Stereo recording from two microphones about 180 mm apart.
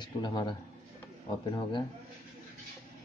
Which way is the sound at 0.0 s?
25° left (ahead or behind).